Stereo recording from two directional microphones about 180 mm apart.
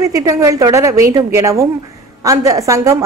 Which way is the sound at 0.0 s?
20° right (ahead or behind).